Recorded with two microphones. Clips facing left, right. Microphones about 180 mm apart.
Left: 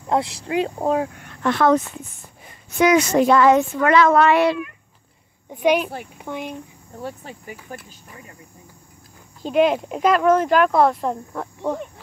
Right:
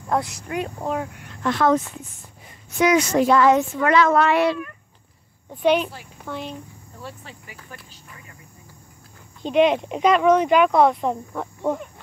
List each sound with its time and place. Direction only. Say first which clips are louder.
0.0 s speech: left 2 dB; 25° left (ahead or behind)
1.4 s speech: left 2 dB; 65° left (ahead or behind)
2.8 s speech: left 2 dB; 55° left (ahead or behind)
5.5 s speech: left 1 dB; 10° left (ahead or behind)
7.0 s speech: left 6 dB; 50° left (ahead or behind)
9.4 s speech: even; 5° left (ahead or behind)